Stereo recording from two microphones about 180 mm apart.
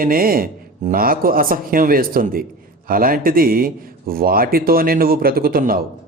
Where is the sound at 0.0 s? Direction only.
50° right (ahead or behind).